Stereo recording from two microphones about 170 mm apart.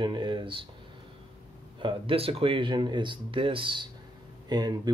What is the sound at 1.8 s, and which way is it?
Speech, 35° right (ahead or behind).